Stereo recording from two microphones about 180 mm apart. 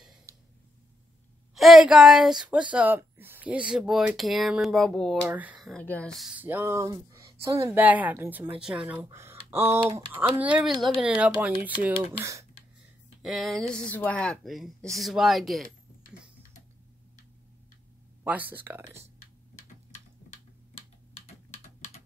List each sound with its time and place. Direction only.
0.3 s a sound: 15° right (ahead or behind)
1.5 s speech: centre (ahead or behind)
5.3 s speech: 10° right (ahead or behind)
5.7 s speech: 5° left (ahead or behind)
6.1 s speech: 5° right (ahead or behind)
13.2 s speech: centre (ahead or behind)
18.2 s speech: 10° right (ahead or behind)
19.5 s typing: 40° left (ahead or behind)